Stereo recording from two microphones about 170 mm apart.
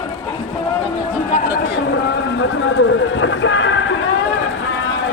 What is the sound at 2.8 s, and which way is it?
Speech, 90° left.